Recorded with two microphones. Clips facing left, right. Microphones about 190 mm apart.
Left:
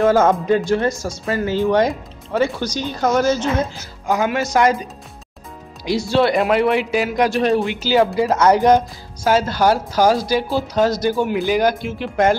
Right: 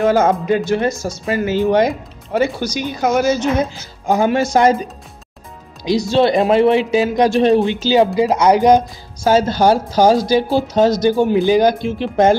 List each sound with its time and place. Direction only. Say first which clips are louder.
0.0 s speech: even; 15° right (ahead or behind)
4.1 s speech: right 4 dB; 30° right (ahead or behind)
5.9 s speech: right 3 dB; 20° right (ahead or behind)